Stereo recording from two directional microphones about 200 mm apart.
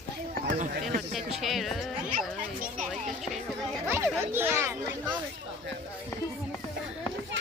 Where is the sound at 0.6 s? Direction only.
40° right (ahead or behind).